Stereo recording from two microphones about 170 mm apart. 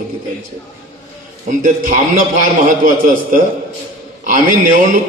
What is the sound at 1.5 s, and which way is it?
Speech, 50° right (ahead or behind).